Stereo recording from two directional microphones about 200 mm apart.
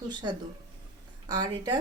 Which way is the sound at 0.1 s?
20° right (ahead or behind).